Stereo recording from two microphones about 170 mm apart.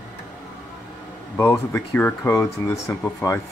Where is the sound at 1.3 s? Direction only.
15° left (ahead or behind).